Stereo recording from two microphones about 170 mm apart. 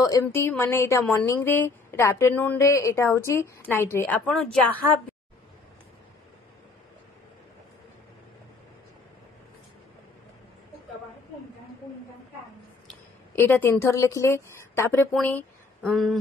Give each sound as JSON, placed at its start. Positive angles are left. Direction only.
{"t": 0.0, "sound": "a woman's voice", "side_deg": 20}
{"t": 13.4, "sound": "a woman's voice", "side_deg": 10}
{"t": 15.1, "sound": "a sound", "side_deg": 5}